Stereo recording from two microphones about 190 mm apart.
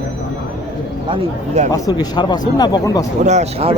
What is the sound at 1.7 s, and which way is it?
Speech, 20° left (ahead or behind).